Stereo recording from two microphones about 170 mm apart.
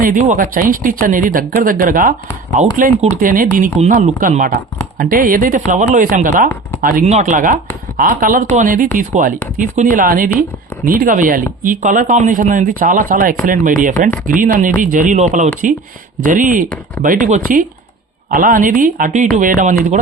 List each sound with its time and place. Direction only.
0.0 s speech: 50° right (ahead or behind)